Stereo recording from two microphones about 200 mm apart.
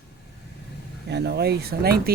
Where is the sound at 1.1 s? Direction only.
55° right (ahead or behind).